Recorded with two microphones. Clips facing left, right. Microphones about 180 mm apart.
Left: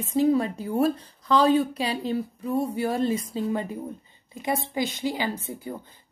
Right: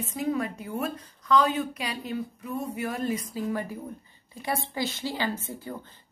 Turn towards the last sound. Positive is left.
turn(degrees=15)  # may be behind; listen again after turning